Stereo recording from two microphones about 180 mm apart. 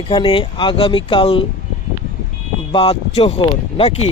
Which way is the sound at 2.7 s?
30° left (ahead or behind).